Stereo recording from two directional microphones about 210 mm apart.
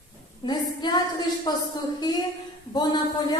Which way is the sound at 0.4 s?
20° left (ahead or behind).